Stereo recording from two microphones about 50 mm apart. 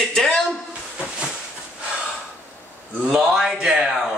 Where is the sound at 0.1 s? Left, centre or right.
Centre.